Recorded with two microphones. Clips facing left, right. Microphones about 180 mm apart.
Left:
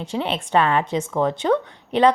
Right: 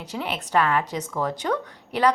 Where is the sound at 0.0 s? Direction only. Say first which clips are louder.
Left 5 dB; 25° left (ahead or behind).